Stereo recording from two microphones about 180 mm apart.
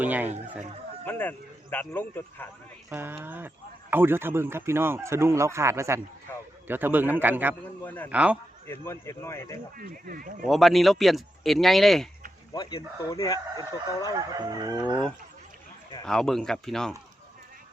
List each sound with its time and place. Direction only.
0.0 s speech: 10° right (ahead or behind)
1.0 s speech: 10° left (ahead or behind)
2.9 s speech: 10° right (ahead or behind)
7.9 s speech: 10° left (ahead or behind)
8.1 s speech: 5° right (ahead or behind)
8.6 s speech: 15° left (ahead or behind)
9.7 s speech: 50° right (ahead or behind)
10.4 s speech: centre (ahead or behind)
12.5 s speech: 20° left (ahead or behind)
14.2 s chicken: 20° right (ahead or behind)
16.0 s speech: centre (ahead or behind)